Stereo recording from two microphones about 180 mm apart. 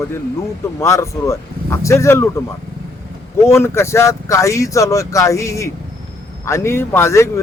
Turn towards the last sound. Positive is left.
turn(degrees=15)  # may be behind; listen again after turning